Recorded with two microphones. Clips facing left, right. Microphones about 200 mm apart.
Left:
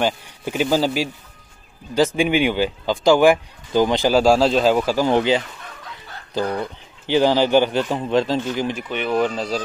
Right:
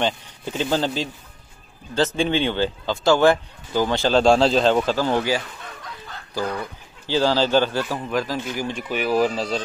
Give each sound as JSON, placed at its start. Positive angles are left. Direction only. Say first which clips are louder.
{"t": 0.0, "sound": "speech", "louder": "left 2 dB", "side_deg": 10}
{"t": 4.2, "sound": "a man's voice", "louder": "even", "side_deg": 5}
{"t": 8.8, "sound": "speech", "louder": "right 3 dB", "side_deg": -5}